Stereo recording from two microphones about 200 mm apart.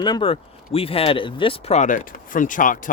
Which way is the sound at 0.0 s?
25° left (ahead or behind).